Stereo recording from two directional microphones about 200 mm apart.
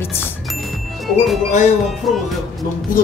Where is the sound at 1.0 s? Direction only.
Centre (ahead or behind).